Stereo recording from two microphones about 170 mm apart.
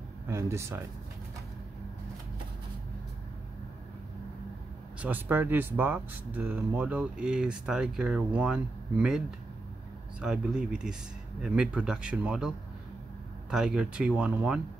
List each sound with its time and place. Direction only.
0.3 s speech: 15° right (ahead or behind)
5.0 s speech: 10° right (ahead or behind)
10.2 s speech: 5° right (ahead or behind)